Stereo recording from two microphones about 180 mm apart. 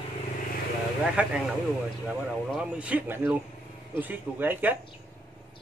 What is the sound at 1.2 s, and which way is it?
A man's voice, 5° right (ahead or behind).